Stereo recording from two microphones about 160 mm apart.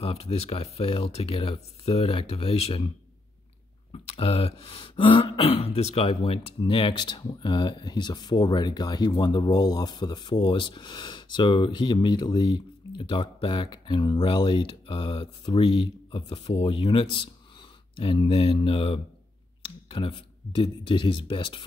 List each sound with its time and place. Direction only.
0.0 s speech: 40° left (ahead or behind)
3.9 s speech: 40° left (ahead or behind)